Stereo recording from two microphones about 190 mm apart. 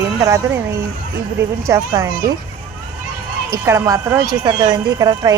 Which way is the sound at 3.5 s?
15° right (ahead or behind).